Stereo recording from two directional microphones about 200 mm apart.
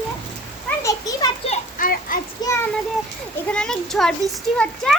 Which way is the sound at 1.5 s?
45° left (ahead or behind).